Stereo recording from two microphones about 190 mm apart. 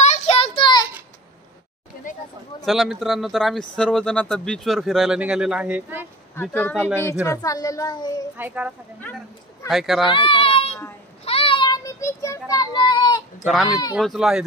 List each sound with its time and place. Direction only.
0.0 s child singing: 35° left (ahead or behind)
2.6 s speech: centre (ahead or behind)
6.3 s a child's voice: 10° left (ahead or behind)
8.4 s speech: 10° right (ahead or behind)
10.0 s a child's voice: 25° left (ahead or behind)
11.2 s child singing: 30° left (ahead or behind)
13.9 s speech: centre (ahead or behind)